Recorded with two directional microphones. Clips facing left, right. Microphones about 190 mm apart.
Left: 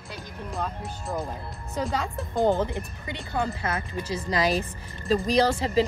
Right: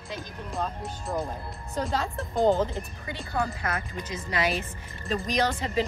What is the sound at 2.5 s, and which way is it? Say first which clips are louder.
Speech: even; 15° left (ahead or behind).